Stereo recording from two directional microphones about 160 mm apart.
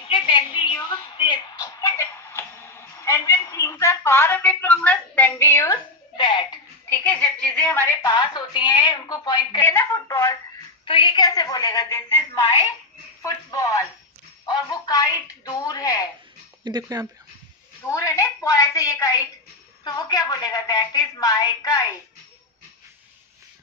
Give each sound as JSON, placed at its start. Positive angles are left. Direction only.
{"t": 0.1, "sound": "a sound", "side_deg": 30}
{"t": 6.1, "sound": "speech", "side_deg": 30}
{"t": 6.9, "sound": "a woman's voice", "side_deg": 10}
{"t": 8.1, "sound": "a woman's voice", "side_deg": 25}
{"t": 9.6, "sound": "a woman's voice", "side_deg": 15}
{"t": 10.9, "sound": "a woman's voice", "side_deg": 30}
{"t": 13.2, "sound": "a woman's voice", "side_deg": 20}
{"t": 16.6, "sound": "speech", "side_deg": -25}
{"t": 17.8, "sound": "a woman's voice", "side_deg": 20}